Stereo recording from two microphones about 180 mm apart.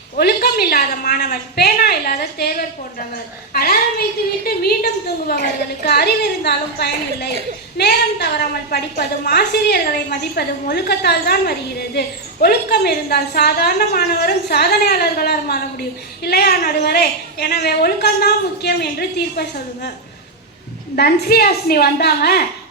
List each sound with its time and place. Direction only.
0.2 s a woman's voice: 60° left (ahead or behind)
20.9 s a woman's voice: 60° left (ahead or behind)